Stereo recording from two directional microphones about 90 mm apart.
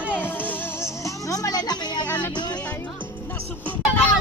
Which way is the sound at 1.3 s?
45° left (ahead or behind).